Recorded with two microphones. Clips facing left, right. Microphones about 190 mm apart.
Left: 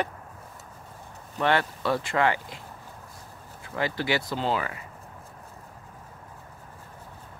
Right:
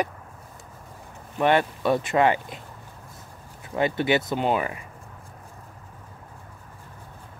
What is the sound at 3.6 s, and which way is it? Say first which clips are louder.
Speech: right 5 dB; 20° right (ahead or behind).